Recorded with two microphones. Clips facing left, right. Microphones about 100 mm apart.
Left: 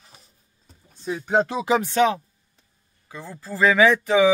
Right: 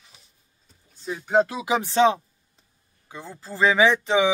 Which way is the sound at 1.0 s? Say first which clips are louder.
Even; centre (ahead or behind).